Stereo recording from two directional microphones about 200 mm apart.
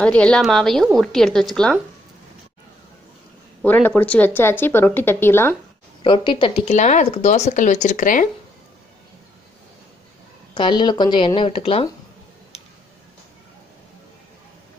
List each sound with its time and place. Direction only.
0.0 s a woman's voice: 5° left (ahead or behind)
3.6 s speech: 10° left (ahead or behind)
6.0 s speech: 25° left (ahead or behind); by 8.3 s 40° left (ahead or behind)
10.5 s speech: 25° left (ahead or behind)